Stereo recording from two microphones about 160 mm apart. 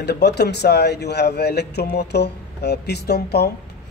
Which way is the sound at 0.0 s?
90° left.